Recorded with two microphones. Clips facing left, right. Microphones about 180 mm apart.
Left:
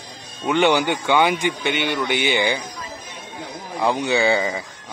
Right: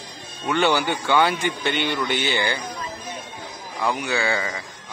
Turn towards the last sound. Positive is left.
turn(degrees=20)  # may be behind; listen again after turning